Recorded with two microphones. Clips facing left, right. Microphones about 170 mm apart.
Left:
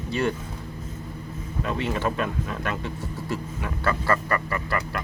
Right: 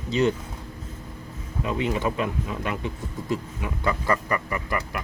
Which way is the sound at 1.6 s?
15° right (ahead or behind).